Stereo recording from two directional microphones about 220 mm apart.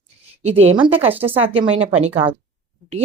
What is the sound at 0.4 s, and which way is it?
Speech, 30° right (ahead or behind).